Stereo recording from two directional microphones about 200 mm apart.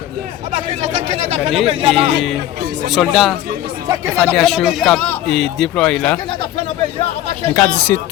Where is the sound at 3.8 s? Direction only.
20° right (ahead or behind).